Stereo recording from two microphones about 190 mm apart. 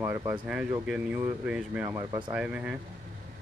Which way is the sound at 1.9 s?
20° right (ahead or behind).